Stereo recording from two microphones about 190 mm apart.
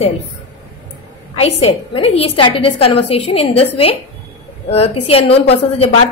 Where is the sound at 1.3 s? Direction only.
30° left (ahead or behind).